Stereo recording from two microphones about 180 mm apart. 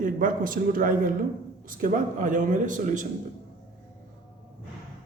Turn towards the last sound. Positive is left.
turn(degrees=-45)  # may be behind; listen again after turning